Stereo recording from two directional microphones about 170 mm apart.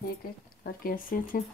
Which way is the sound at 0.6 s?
55° left (ahead or behind).